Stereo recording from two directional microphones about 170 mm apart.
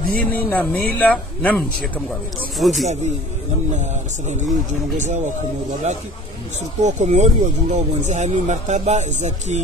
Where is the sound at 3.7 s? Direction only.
45° right (ahead or behind).